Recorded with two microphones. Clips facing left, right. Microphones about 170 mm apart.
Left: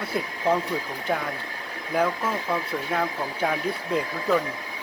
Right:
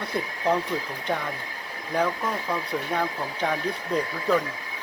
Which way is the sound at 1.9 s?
5° left (ahead or behind).